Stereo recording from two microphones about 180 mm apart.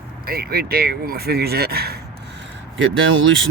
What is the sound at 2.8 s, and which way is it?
Speech, 90° right.